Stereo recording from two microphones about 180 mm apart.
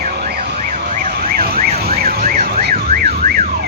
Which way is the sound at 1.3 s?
55° right (ahead or behind).